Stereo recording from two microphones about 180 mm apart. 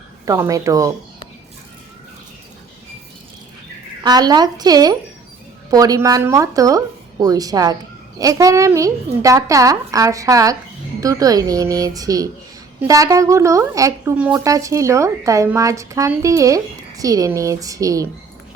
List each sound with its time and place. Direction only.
0.3 s speech: 20° right (ahead or behind)
4.0 s a woman's voice: 20° right (ahead or behind)
14.4 s speech: 15° right (ahead or behind)